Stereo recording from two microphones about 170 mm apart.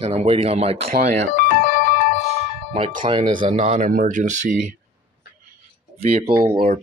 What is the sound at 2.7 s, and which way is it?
Speech, 35° right (ahead or behind).